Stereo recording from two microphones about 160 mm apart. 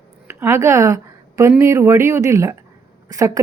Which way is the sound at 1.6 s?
15° right (ahead or behind).